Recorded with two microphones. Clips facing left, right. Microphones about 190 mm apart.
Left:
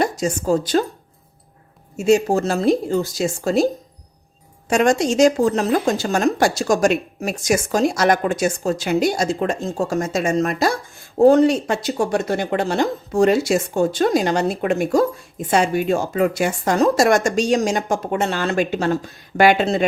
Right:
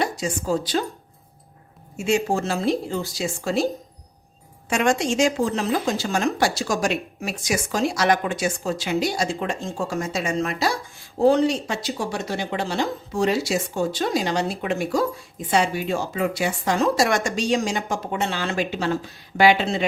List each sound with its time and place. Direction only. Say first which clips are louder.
0.0 s speech: left 5 dB; 45° left (ahead or behind)
2.0 s a woman's voice: left 6 dB; 40° left (ahead or behind)
4.7 s a woman's voice: left 4 dB; 40° left (ahead or behind)